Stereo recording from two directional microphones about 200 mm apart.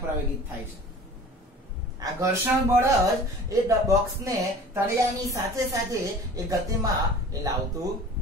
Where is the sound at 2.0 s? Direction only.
15° right (ahead or behind).